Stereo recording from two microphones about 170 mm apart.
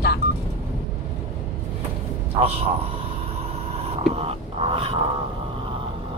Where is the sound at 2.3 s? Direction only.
35° right (ahead or behind).